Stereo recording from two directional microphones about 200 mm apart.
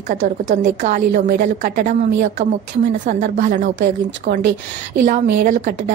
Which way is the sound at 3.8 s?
60° right (ahead or behind).